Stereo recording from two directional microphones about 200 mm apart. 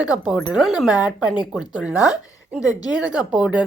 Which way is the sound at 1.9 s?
15° left (ahead or behind).